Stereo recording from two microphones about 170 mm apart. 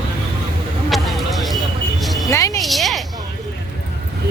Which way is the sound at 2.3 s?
20° left (ahead or behind).